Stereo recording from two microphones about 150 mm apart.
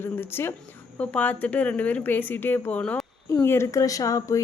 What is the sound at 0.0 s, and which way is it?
A woman's voice, 15° left (ahead or behind).